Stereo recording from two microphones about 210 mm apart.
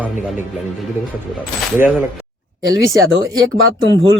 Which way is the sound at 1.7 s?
5° right (ahead or behind).